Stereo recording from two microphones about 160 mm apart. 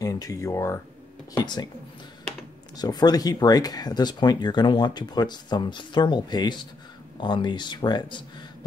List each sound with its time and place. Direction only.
0.0 s speech: 20° left (ahead or behind)
2.8 s speech: 25° left (ahead or behind)